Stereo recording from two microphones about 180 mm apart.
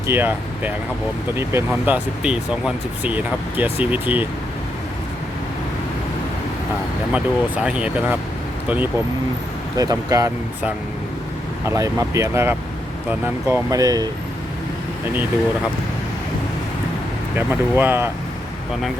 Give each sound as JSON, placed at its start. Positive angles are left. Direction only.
{"t": 0.1, "sound": "speech", "side_deg": -10}
{"t": 7.1, "sound": "speech", "side_deg": -5}
{"t": 9.7, "sound": "speech", "side_deg": -20}
{"t": 11.7, "sound": "speech", "side_deg": -15}
{"t": 17.3, "sound": "speech", "side_deg": -10}